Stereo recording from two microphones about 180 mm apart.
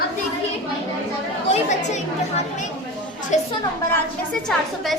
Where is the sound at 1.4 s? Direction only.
40° left (ahead or behind).